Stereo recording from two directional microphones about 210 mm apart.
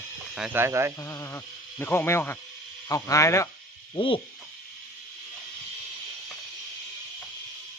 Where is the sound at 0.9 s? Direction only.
15° left (ahead or behind).